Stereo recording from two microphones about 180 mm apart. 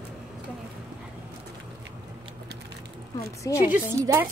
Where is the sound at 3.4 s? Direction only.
20° left (ahead or behind).